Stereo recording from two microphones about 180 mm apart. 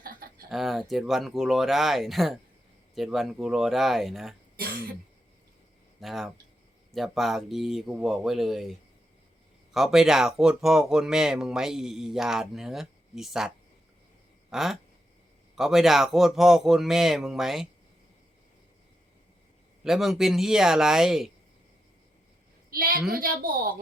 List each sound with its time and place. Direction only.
0.0 s a sound: 55° right (ahead or behind)
0.5 s speech: centre (ahead or behind)
6.0 s speech: centre (ahead or behind)
9.7 s speech: centre (ahead or behind)
14.5 s speech: centre (ahead or behind)
19.8 s speech: centre (ahead or behind)
22.7 s a woman's voice: 55° right (ahead or behind)